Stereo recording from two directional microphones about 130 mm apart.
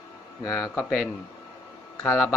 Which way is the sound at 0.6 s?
20° left (ahead or behind).